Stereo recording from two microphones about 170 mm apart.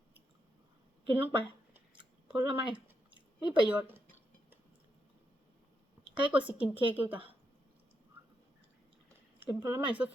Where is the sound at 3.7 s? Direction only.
10° right (ahead or behind).